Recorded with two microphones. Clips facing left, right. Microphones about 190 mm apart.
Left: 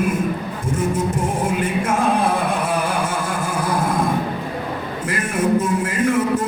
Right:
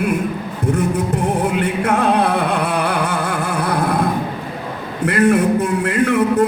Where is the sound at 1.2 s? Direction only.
65° right (ahead or behind).